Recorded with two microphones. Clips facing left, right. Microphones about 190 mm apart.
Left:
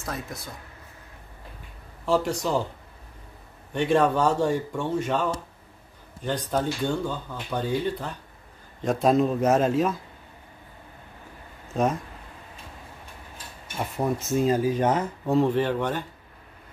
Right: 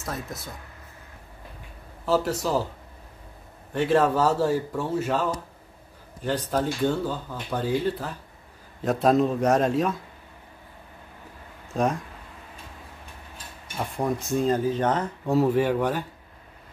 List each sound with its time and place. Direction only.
0.0 s speech: centre (ahead or behind)
2.0 s speech: 5° right (ahead or behind)
3.7 s speech: 5° right (ahead or behind)
6.5 s speech: 5° right (ahead or behind)
11.7 s speech: centre (ahead or behind)
13.7 s speech: 5° left (ahead or behind)
15.3 s speech: 10° right (ahead or behind)